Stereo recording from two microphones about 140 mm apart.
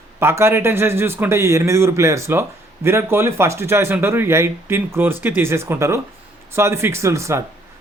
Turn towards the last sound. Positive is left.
turn(degrees=-20)  # may be behind; listen again after turning